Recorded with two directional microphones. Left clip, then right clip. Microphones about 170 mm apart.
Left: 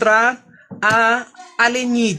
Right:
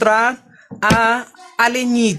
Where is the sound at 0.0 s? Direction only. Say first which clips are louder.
Even; 25° right (ahead or behind).